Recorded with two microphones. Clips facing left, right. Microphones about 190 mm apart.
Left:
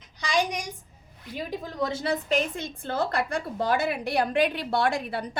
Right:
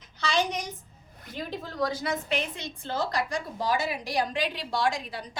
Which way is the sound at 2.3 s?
50° left (ahead or behind).